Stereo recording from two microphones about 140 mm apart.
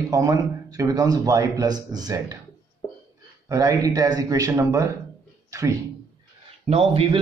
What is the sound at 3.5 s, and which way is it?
Speech, 25° right (ahead or behind).